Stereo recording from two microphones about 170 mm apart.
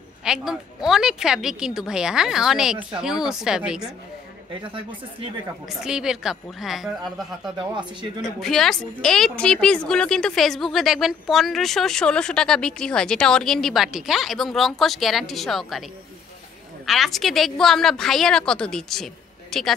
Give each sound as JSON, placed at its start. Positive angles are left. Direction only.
{"t": 0.2, "sound": "a woman's voice", "side_deg": -5}
{"t": 5.7, "sound": "a woman's voice", "side_deg": -5}
{"t": 7.5, "sound": "speech", "side_deg": -25}
{"t": 8.2, "sound": "a woman's voice", "side_deg": 0}
{"t": 16.8, "sound": "a woman's voice", "side_deg": 0}